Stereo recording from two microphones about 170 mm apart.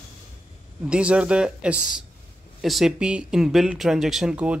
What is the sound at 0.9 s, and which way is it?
Speech, 5° right (ahead or behind).